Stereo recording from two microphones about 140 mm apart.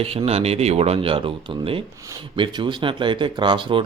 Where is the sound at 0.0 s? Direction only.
45° right (ahead or behind).